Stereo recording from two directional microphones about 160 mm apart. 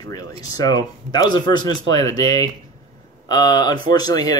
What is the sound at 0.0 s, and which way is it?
Speech, 25° left (ahead or behind).